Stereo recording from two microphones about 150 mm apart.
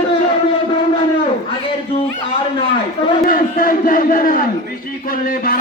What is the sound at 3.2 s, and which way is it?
Speech, 70° left (ahead or behind).